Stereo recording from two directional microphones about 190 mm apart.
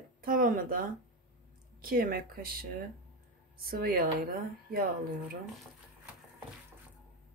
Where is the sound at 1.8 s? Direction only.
50° right (ahead or behind).